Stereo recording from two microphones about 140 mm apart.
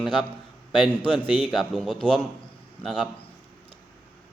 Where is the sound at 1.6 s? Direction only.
Centre (ahead or behind).